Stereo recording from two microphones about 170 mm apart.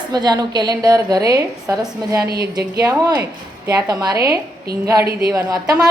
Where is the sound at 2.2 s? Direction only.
70° right (ahead or behind).